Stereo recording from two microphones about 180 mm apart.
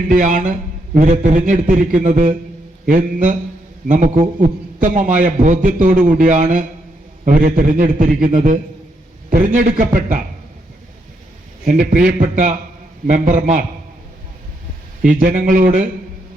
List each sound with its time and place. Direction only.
0.1 s a man's voice: 50° right (ahead or behind)
11.6 s a man's voice: 50° right (ahead or behind)
15.0 s a man's voice: 50° right (ahead or behind)